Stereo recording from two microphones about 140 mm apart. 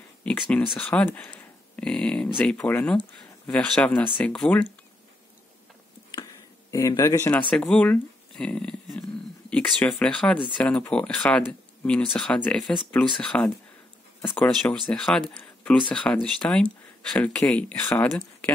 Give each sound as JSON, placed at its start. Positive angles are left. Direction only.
{"t": 0.4, "sound": "speech", "side_deg": 5}
{"t": 6.7, "sound": "speech", "side_deg": 25}
{"t": 7.5, "sound": "speech", "side_deg": 5}